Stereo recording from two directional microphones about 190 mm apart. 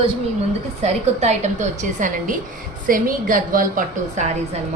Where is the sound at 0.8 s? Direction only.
35° right (ahead or behind).